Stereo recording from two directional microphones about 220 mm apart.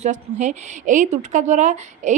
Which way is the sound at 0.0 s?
30° right (ahead or behind).